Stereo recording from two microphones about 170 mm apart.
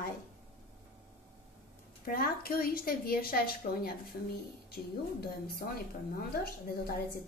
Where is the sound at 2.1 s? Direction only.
60° left (ahead or behind).